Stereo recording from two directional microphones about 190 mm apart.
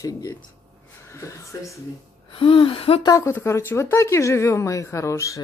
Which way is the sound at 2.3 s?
30° left (ahead or behind).